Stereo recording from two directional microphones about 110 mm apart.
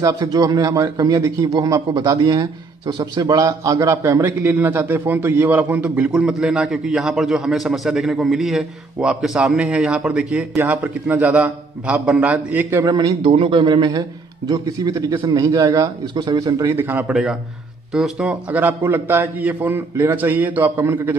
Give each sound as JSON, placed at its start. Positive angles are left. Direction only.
{"t": 0.0, "sound": "a man's voice", "side_deg": -30}
{"t": 1.4, "sound": "a man's voice", "side_deg": -45}
{"t": 12.8, "sound": "a man's voice", "side_deg": -35}
{"t": 13.2, "sound": "a man's voice", "side_deg": -55}
{"t": 16.7, "sound": "a man's voice", "side_deg": -20}
{"t": 17.1, "sound": "a man's voice", "side_deg": -5}